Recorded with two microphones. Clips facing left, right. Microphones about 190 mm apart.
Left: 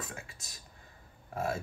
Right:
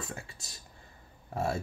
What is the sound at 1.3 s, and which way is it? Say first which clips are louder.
Speech: right 2 dB; 30° right (ahead or behind).